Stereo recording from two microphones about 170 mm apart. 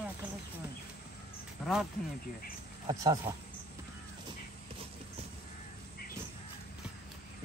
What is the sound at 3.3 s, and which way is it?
Speech, 25° right (ahead or behind).